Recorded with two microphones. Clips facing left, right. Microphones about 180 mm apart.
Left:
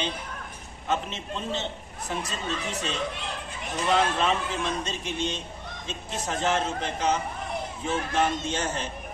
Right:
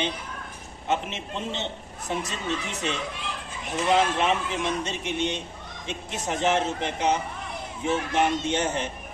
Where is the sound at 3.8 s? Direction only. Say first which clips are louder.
Right 2 dB; 20° right (ahead or behind).